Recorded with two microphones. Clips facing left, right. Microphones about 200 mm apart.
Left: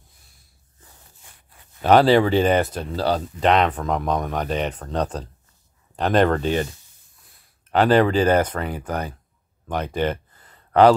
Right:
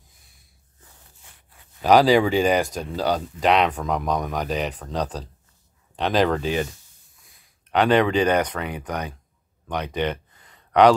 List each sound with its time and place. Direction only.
1.8 s speech: 5° right (ahead or behind)
7.8 s speech: 40° left (ahead or behind)
9.9 s a sound: 40° left (ahead or behind)